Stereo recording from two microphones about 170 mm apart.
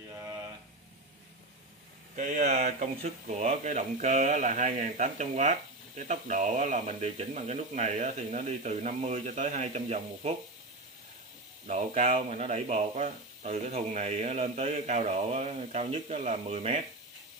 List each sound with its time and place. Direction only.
2.1 s speech: 45° right (ahead or behind)
11.6 s speech: 45° right (ahead or behind)